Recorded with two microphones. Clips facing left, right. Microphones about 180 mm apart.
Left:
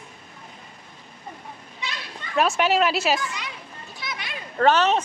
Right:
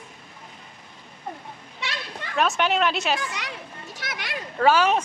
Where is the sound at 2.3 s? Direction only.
Centre (ahead or behind).